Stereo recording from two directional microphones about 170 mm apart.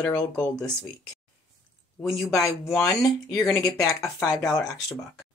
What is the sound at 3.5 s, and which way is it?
Speech, 15° left (ahead or behind).